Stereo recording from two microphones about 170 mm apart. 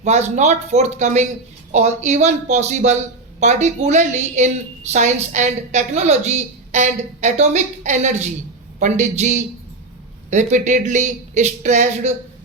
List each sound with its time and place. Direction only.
0.0 s a woman's voice: 45° right (ahead or behind)